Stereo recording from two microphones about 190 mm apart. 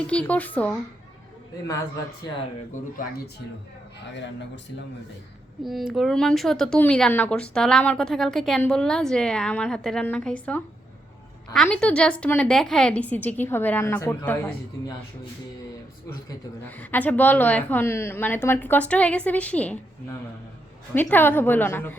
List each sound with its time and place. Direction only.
0.1 s a woman's voice: 5° left (ahead or behind)
4.1 s speech: 70° left (ahead or behind)
5.6 s a woman's voice: centre (ahead or behind)
16.7 s a woman's voice: 10° left (ahead or behind)
20.9 s a woman's voice: 10° left (ahead or behind)